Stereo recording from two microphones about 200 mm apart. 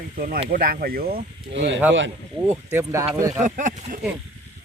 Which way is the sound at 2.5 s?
15° right (ahead or behind).